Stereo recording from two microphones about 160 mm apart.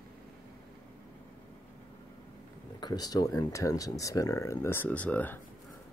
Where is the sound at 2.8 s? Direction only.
25° left (ahead or behind); by 5.4 s 10° left (ahead or behind).